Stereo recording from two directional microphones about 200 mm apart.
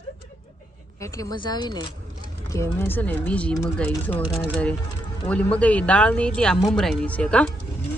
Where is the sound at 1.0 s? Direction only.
15° left (ahead or behind).